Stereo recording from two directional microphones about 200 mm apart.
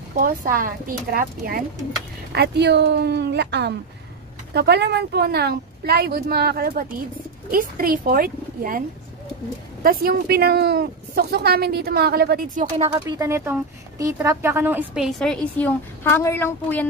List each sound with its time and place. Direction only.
0.1 s a woman's voice: 45° right (ahead or behind)
2.3 s a woman's voice: 55° right (ahead or behind)
9.8 s a woman's voice: 50° right (ahead or behind)
12.7 s speech: 25° right (ahead or behind); by 16.8 s 10° left (ahead or behind)